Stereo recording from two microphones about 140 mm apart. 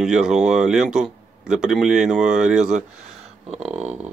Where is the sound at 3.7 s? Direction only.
50° right (ahead or behind).